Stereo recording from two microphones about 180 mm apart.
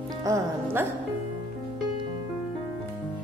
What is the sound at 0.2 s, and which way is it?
Speech, 20° right (ahead or behind).